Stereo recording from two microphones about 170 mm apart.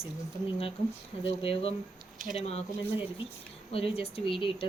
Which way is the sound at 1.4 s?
35° left (ahead or behind).